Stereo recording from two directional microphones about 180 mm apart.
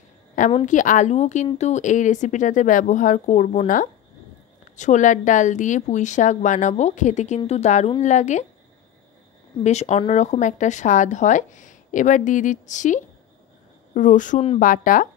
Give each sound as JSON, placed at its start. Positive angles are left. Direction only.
{"t": 0.7, "sound": "a woman's voice", "side_deg": 45}
{"t": 9.6, "sound": "a woman's voice", "side_deg": 40}